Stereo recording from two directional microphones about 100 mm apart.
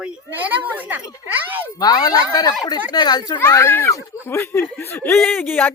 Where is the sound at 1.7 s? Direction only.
40° left (ahead or behind).